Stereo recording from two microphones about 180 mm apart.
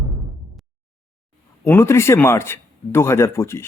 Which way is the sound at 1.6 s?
15° left (ahead or behind).